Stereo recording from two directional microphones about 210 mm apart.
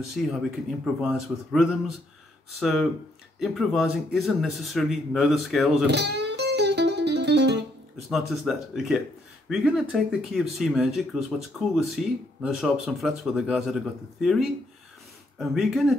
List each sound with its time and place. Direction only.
0.1 s speech: centre (ahead or behind)
5.9 s music: 55° right (ahead or behind)
8.1 s speech: centre (ahead or behind)